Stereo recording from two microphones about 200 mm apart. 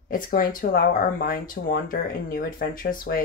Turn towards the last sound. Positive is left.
turn(degrees=45)  # may be behind; listen again after turning